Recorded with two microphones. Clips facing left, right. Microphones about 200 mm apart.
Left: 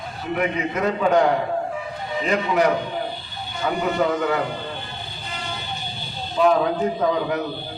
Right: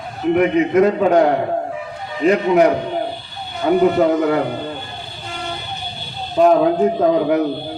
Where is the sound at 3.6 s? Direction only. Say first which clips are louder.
Right 8 dB; 50° right (ahead or behind).